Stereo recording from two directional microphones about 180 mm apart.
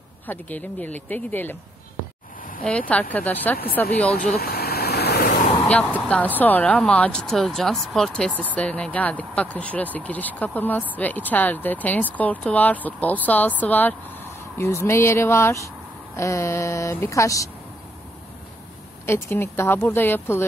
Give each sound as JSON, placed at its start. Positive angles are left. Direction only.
{"t": 0.3, "sound": "speech", "side_deg": 10}
{"t": 2.9, "sound": "speech", "side_deg": 10}
{"t": 4.4, "sound": "vehicle", "side_deg": 60}
{"t": 5.9, "sound": "speech", "side_deg": 10}
{"t": 19.0, "sound": "speech", "side_deg": 15}